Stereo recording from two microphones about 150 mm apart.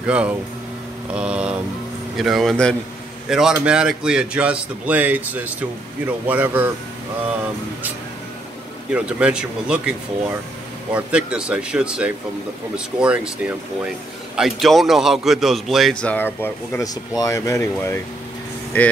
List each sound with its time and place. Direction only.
0.0 s a man's voice: 10° right (ahead or behind)
1.1 s mantra: 5° right (ahead or behind)
2.1 s a man's voice: centre (ahead or behind)
8.9 s a man's voice: 5° right (ahead or behind)
11.0 s a man's voice: 10° right (ahead or behind); by 18.9 s 10° left (ahead or behind)